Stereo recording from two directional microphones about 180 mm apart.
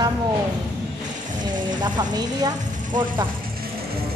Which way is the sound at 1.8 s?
25° right (ahead or behind).